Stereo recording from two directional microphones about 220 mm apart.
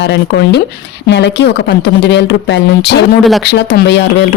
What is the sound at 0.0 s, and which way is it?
Speech, 55° left (ahead or behind).